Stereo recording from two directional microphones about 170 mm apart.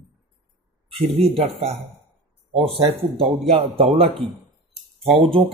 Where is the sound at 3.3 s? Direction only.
35° right (ahead or behind).